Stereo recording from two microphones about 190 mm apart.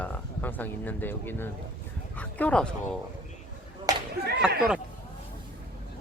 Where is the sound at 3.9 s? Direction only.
20° right (ahead or behind).